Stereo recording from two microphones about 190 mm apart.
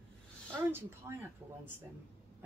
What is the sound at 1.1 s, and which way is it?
Speech, 15° right (ahead or behind).